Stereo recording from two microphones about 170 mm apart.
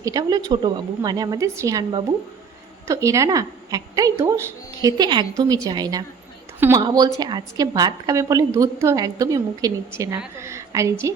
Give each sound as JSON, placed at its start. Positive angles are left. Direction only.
{"t": 0.0, "sound": "a woman's voice", "side_deg": -20}